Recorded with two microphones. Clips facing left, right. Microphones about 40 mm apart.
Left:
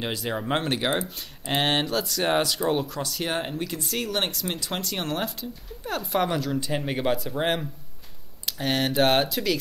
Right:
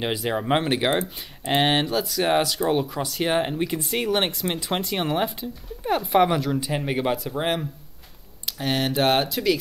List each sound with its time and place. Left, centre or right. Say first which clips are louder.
0.0 s speech: right 4 dB; centre